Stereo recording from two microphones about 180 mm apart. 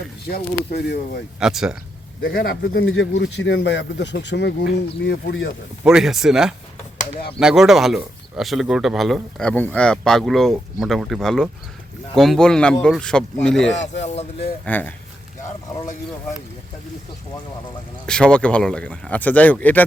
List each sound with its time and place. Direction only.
0.3 s speech: 60° left (ahead or behind)
1.4 s speech: 5° right (ahead or behind)
2.2 s speech: 85° left
5.8 s speech: 5° right (ahead or behind)
18.0 s speech: 5° left (ahead or behind)